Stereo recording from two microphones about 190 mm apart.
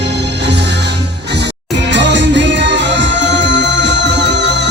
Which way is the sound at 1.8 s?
70° right (ahead or behind).